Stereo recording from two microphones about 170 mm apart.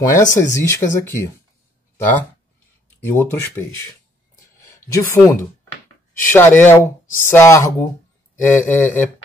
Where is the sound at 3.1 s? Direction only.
15° left (ahead or behind).